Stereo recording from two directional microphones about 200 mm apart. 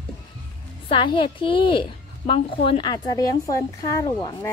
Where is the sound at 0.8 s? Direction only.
25° left (ahead or behind).